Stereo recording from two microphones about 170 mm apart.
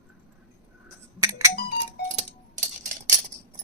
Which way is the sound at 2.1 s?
50° right (ahead or behind).